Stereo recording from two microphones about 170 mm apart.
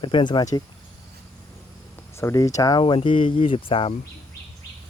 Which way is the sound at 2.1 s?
20° left (ahead or behind).